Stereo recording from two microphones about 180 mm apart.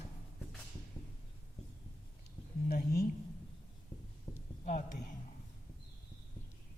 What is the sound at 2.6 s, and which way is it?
Speech, 60° left (ahead or behind).